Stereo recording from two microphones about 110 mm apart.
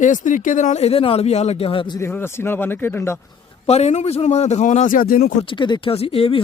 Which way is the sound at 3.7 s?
85° left.